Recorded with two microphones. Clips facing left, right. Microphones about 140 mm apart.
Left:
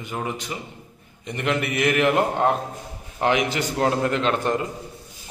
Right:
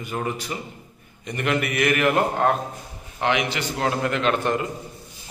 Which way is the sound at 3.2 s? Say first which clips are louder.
Left 2 dB; 40° left (ahead or behind).